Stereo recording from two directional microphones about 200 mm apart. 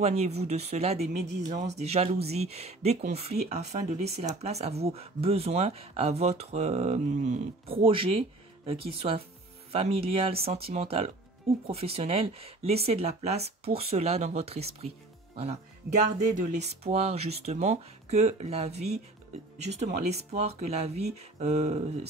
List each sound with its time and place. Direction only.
0.0 s speech: 30° right (ahead or behind)